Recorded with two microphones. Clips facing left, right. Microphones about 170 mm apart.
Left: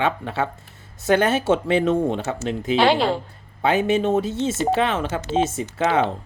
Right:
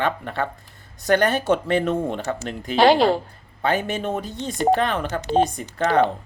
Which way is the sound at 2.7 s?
40° right (ahead or behind).